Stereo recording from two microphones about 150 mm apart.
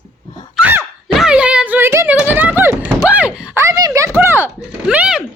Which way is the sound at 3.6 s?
20° right (ahead or behind).